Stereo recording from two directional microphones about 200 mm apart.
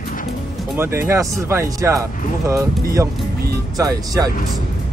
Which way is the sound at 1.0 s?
15° right (ahead or behind).